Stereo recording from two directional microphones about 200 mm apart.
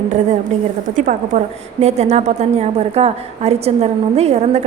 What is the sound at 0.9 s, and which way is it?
A woman's voice, 40° right (ahead or behind).